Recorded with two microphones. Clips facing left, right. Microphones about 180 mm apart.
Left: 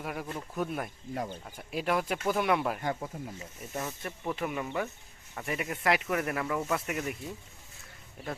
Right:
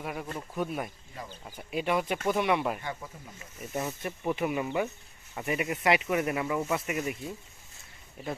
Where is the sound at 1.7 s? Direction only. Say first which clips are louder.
Right 1 dB; centre (ahead or behind).